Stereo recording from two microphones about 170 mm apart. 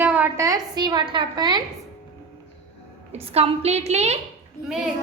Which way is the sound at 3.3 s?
35° right (ahead or behind).